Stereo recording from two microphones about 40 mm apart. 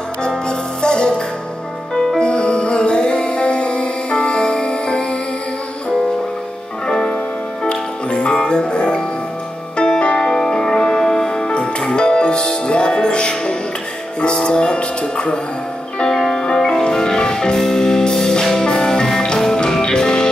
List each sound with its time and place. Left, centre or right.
0.5 s music: left
7.6 s music: left